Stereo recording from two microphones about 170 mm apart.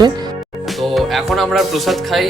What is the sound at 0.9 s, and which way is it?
Speech, centre (ahead or behind).